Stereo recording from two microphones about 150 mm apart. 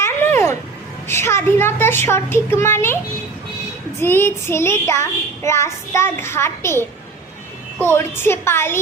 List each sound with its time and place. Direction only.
0.0 s a sound: 15° left (ahead or behind)
1.0 s child singing: 15° left (ahead or behind)
4.0 s child singing: 15° left (ahead or behind)